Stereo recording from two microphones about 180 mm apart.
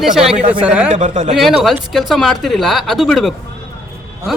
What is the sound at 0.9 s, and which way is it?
Speech, 40° right (ahead or behind).